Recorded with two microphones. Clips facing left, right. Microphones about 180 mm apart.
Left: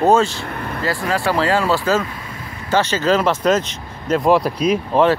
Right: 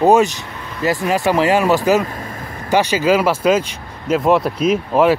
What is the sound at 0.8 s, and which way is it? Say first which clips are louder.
Speech: right 4 dB; 20° right (ahead or behind).